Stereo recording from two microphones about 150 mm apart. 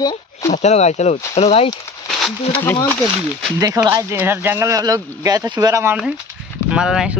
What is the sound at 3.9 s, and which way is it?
Speech, 20° right (ahead or behind).